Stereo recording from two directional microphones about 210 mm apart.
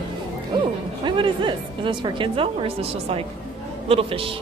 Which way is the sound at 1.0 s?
25° right (ahead or behind).